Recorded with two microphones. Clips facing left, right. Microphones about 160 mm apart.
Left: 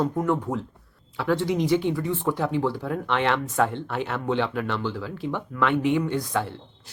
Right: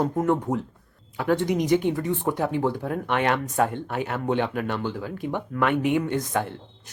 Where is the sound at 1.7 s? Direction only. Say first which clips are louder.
Right 1 dB; 50° right (ahead or behind).